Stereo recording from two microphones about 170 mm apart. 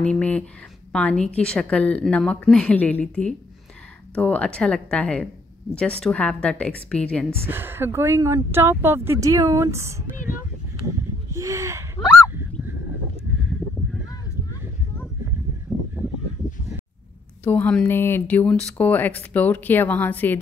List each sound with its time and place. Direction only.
0.0 s a woman's voice: 5° left (ahead or behind)
7.2 s speech: 15° right (ahead or behind)
11.3 s speech: 20° right (ahead or behind)
15.7 s a sound: centre (ahead or behind)
17.4 s speech: 10° left (ahead or behind)